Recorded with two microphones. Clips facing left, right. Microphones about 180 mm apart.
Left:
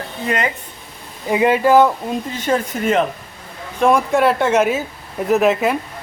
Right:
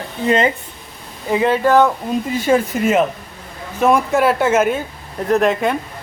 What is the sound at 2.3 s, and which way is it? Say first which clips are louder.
Speech: right 5 dB; 10° right (ahead or behind).